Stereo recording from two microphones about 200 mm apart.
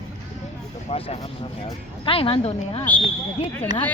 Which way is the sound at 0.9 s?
30° left (ahead or behind).